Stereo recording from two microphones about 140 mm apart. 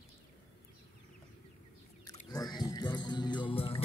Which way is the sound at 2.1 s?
25° left (ahead or behind).